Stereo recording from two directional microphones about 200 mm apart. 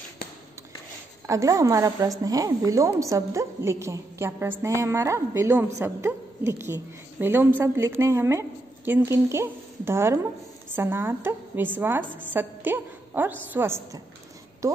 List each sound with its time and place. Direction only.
1.3 s a woman's voice: 15° right (ahead or behind)